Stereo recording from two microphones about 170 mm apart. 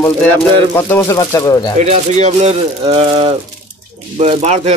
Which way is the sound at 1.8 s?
40° right (ahead or behind).